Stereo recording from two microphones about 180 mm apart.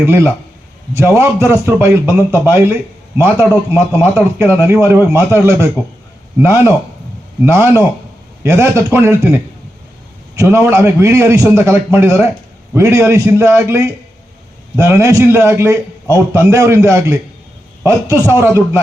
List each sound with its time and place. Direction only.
0.0 s a man's voice: 15° right (ahead or behind)
3.8 s a man's voice: 15° right (ahead or behind)